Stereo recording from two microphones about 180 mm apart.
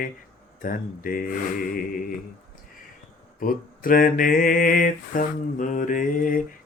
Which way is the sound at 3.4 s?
50° left (ahead or behind).